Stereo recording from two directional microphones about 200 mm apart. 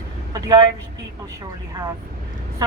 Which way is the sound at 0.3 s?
20° right (ahead or behind).